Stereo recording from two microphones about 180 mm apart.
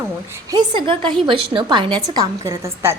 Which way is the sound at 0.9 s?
30° right (ahead or behind).